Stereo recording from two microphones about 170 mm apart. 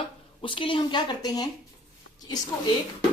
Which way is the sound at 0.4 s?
30° left (ahead or behind).